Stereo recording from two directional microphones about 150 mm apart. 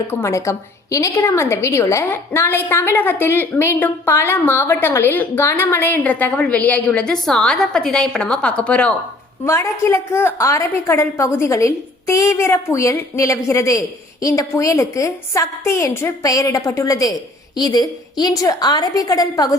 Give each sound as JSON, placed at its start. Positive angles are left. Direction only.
{"t": 0.1, "sound": "a woman's voice", "side_deg": 20}
{"t": 9.4, "sound": "a woman's voice", "side_deg": 20}